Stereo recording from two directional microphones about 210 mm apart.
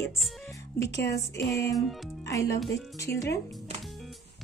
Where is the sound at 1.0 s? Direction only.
15° left (ahead or behind).